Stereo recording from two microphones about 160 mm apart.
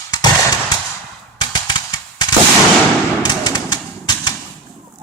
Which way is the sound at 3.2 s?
25° left (ahead or behind).